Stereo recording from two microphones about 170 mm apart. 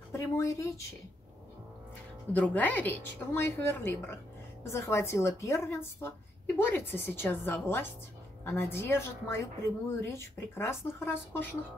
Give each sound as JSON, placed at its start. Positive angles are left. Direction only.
{"t": 0.1, "sound": "speech", "side_deg": 20}
{"t": 2.3, "sound": "a woman's voice", "side_deg": 10}